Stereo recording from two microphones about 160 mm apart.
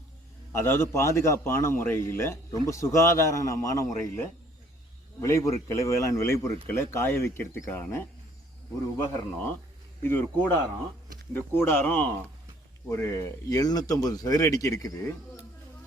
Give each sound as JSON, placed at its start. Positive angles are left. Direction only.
{"t": 0.5, "sound": "a man's voice", "side_deg": 15}
{"t": 5.2, "sound": "a man's voice", "side_deg": 20}